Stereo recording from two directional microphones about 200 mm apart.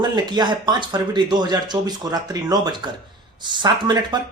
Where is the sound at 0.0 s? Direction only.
20° right (ahead or behind).